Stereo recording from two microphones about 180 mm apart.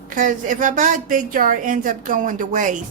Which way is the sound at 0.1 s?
45° right (ahead or behind).